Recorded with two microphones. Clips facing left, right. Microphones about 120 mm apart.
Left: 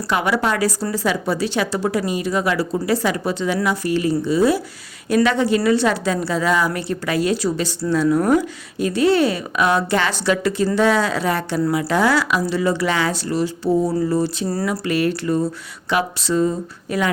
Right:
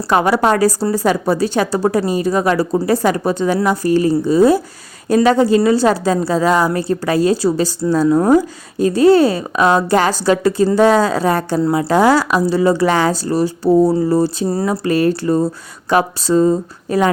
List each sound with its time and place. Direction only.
0.1 s a woman's voice: 40° right (ahead or behind)